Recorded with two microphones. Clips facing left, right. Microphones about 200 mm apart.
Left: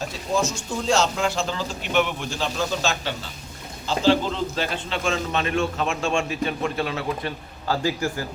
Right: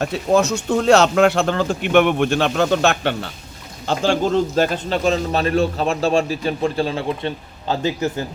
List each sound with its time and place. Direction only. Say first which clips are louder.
0.0 s speech: right 8 dB; 65° right (ahead or behind)
3.8 s a man's voice: right 2 dB; 50° right (ahead or behind); by 8.2 s 20° right (ahead or behind)